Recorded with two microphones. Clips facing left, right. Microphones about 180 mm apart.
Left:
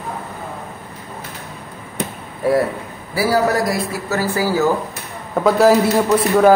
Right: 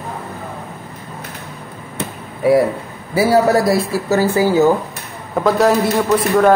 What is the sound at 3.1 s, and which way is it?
Speech, 25° right (ahead or behind).